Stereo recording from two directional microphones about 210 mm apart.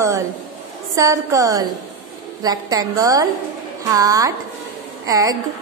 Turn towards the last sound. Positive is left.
turn(degrees=-15)  # may be behind; listen again after turning